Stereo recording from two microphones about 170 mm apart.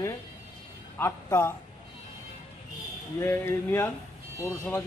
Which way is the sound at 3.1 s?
15° left (ahead or behind).